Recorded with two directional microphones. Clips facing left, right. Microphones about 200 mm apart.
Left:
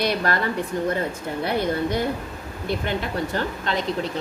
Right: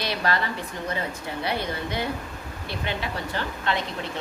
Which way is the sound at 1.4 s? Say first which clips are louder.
Left 6 dB; 50° left (ahead or behind).